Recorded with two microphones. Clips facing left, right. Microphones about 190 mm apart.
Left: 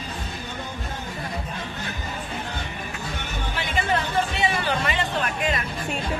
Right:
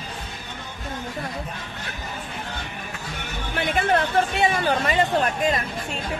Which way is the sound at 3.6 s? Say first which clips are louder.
Right 4 dB; 55° right (ahead or behind).